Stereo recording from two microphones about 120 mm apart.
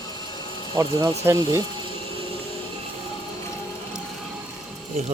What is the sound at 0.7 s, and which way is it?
Speech, 25° right (ahead or behind).